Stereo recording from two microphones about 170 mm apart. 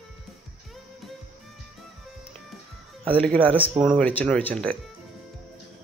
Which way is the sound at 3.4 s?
30° right (ahead or behind).